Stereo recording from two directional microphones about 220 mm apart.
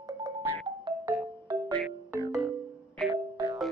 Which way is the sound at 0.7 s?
20° right (ahead or behind).